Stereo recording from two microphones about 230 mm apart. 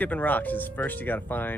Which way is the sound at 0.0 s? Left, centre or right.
Centre.